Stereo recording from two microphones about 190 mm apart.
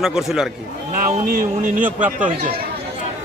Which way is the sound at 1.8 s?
10° right (ahead or behind).